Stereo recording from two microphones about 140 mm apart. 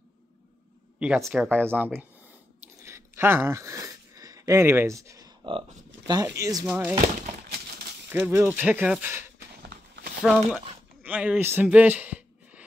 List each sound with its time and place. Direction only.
0.9 s speech: 10° right (ahead or behind)
1.3 s speech: 5° left (ahead or behind)
1.7 s speech: 15° right (ahead or behind)
2.8 s a sound: 15° right (ahead or behind)
6.2 s speech: 25° right (ahead or behind)
8.1 s speech: 15° right (ahead or behind)
10.2 s a man's voice: 10° right (ahead or behind)